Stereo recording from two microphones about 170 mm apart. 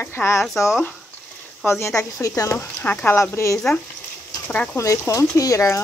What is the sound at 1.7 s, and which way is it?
Speech, 15° left (ahead or behind).